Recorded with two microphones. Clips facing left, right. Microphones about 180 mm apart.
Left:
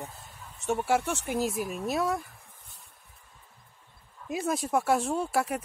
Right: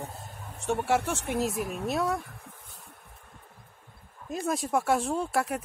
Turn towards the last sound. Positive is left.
turn(degrees=0)  # may be behind; listen again after turning